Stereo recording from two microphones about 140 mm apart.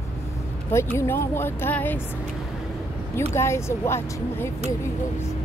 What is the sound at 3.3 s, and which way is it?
Speech, 20° left (ahead or behind).